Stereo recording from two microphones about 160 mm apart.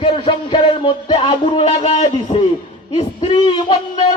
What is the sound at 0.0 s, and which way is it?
Music, 30° left (ahead or behind).